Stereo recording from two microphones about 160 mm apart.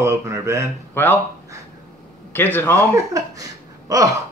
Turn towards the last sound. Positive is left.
turn(degrees=-20)  # may be behind; listen again after turning